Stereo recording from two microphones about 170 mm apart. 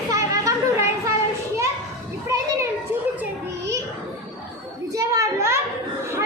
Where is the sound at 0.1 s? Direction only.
20° right (ahead or behind).